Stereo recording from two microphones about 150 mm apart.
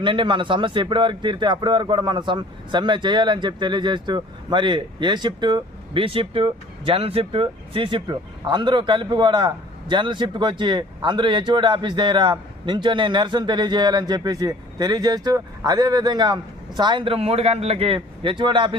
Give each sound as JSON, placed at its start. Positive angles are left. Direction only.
{"t": 0.0, "sound": "speech", "side_deg": -35}